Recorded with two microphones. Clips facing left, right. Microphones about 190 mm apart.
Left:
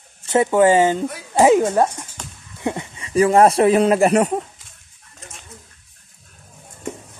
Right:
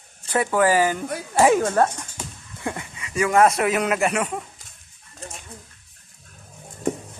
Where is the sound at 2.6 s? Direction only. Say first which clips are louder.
Left 5 dB; 20° left (ahead or behind).